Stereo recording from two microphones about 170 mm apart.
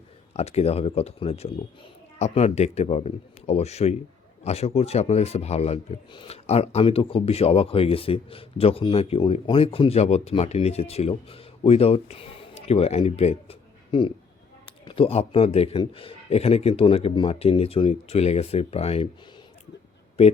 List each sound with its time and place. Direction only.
0.3 s speech: 40° left (ahead or behind)